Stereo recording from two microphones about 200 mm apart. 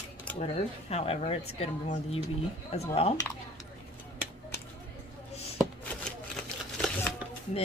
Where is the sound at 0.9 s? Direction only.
30° left (ahead or behind).